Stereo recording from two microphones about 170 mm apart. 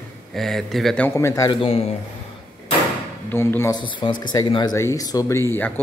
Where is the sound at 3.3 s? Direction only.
15° left (ahead or behind).